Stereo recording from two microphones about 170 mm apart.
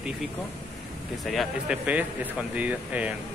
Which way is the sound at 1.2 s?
5° right (ahead or behind).